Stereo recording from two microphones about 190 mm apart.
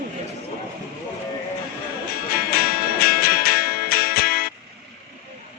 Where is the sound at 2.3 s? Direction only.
55° left (ahead or behind).